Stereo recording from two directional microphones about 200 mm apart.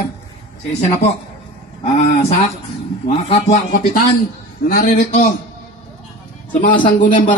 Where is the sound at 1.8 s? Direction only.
35° left (ahead or behind).